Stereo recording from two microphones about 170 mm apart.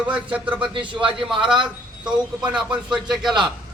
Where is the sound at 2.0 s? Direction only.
5° right (ahead or behind).